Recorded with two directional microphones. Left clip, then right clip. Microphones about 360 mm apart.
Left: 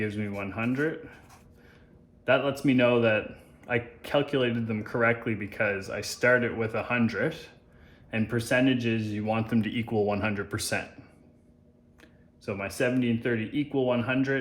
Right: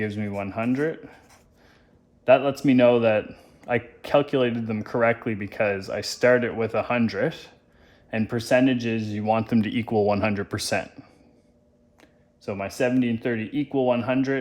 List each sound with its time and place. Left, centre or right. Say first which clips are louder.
0.0 s a man's voice: right 3 dB; right
2.2 s a man's voice: right 6 dB; right
12.5 s a man's voice: right 3 dB; centre